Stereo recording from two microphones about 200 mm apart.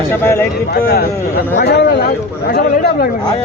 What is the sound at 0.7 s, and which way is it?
A man's voice, 50° left (ahead or behind).